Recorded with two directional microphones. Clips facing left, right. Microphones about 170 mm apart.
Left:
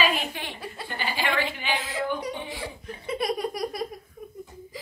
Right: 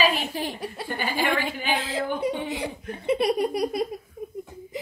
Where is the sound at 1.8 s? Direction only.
30° right (ahead or behind).